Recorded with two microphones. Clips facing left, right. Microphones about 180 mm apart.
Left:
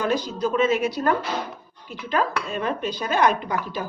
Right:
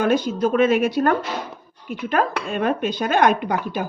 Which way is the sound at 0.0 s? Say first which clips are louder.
Right 5 dB; 55° right (ahead or behind).